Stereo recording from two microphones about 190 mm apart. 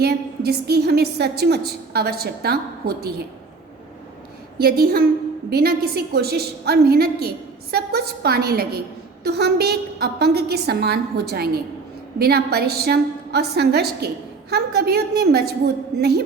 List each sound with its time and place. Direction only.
0.0 s a woman's voice: 55° right (ahead or behind)
4.5 s a woman's voice: 55° right (ahead or behind)